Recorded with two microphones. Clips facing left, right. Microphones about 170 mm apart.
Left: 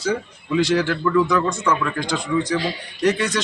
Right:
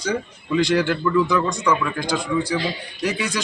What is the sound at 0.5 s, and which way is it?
A man's voice, centre (ahead or behind).